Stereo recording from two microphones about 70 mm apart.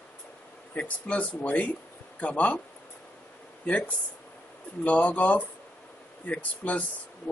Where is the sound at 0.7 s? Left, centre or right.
Centre.